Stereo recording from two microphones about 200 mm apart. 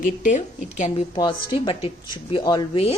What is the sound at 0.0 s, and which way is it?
Speech, 40° left (ahead or behind).